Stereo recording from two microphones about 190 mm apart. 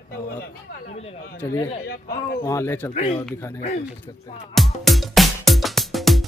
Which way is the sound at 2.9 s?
35° left (ahead or behind).